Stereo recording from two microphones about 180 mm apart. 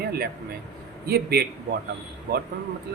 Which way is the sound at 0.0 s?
60° right (ahead or behind).